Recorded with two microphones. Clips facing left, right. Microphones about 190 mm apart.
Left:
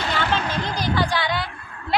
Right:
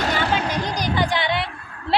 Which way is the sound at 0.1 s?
15° right (ahead or behind).